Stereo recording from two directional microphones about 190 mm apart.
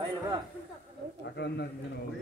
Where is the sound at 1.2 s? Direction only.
65° left (ahead or behind).